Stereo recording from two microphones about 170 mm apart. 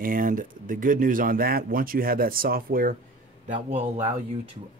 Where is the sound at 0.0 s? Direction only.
55° right (ahead or behind).